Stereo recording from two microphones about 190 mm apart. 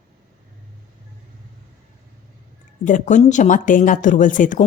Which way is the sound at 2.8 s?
40° left (ahead or behind).